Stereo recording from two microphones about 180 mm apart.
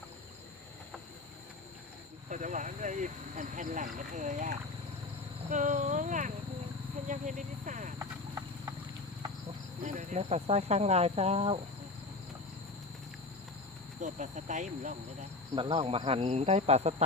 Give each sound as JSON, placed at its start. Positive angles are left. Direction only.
{"t": 2.3, "sound": "speech", "side_deg": -45}
{"t": 9.8, "sound": "speech", "side_deg": -45}
{"t": 14.0, "sound": "speech", "side_deg": -45}
{"t": 15.5, "sound": "speech", "side_deg": -25}